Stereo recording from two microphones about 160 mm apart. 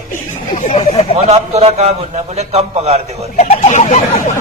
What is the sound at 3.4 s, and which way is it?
Speech, 45° left (ahead or behind).